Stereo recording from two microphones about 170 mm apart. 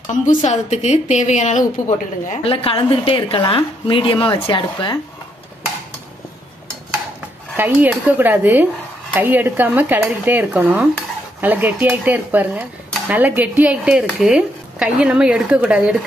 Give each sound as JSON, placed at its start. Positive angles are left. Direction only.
{"t": 0.1, "sound": "a woman's voice", "side_deg": 45}
{"t": 7.5, "sound": "speech", "side_deg": -10}